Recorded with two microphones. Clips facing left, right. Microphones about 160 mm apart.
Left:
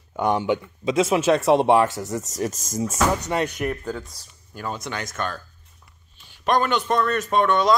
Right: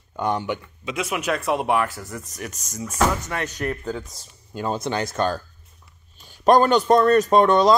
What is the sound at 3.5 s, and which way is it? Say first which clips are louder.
Speech: even; 5° left (ahead or behind).